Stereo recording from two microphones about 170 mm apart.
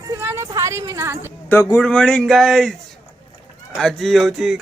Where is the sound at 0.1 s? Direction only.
15° right (ahead or behind).